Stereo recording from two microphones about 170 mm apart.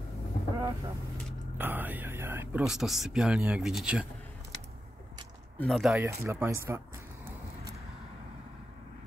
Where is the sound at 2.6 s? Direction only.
5° right (ahead or behind).